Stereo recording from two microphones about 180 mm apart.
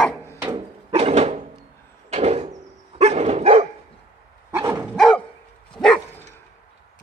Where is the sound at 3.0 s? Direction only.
35° right (ahead or behind).